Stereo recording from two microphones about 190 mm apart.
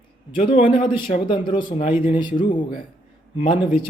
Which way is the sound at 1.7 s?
45° left (ahead or behind).